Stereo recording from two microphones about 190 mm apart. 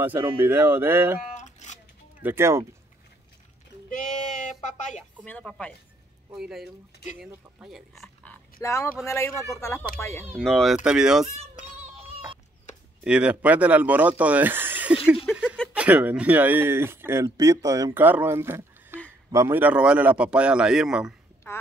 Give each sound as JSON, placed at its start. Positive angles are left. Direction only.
{"t": 0.0, "sound": "speech", "side_deg": -10}
{"t": 1.3, "sound": "a sound", "side_deg": 40}
{"t": 2.2, "sound": "speech", "side_deg": -15}
{"t": 5.2, "sound": "a man's voice", "side_deg": 5}
{"t": 10.4, "sound": "a man's voice", "side_deg": 0}
{"t": 13.0, "sound": "speech", "side_deg": -5}
{"t": 15.3, "sound": "speech", "side_deg": 10}
{"t": 15.7, "sound": "a man's voice", "side_deg": -5}
{"t": 21.5, "sound": "speech", "side_deg": 15}